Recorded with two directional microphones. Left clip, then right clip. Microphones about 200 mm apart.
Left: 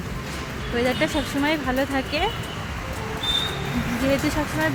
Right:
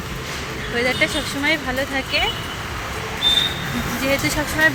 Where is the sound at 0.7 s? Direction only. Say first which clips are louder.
Right 3 dB; 20° left (ahead or behind).